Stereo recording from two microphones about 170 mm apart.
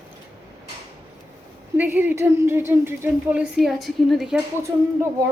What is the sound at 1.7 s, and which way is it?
Speech, 10° right (ahead or behind).